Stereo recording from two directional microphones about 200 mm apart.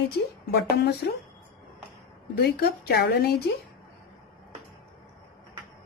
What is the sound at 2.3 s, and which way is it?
A woman's voice, 55° left (ahead or behind).